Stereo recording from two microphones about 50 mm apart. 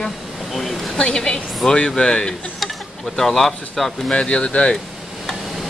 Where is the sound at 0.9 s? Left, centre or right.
Centre.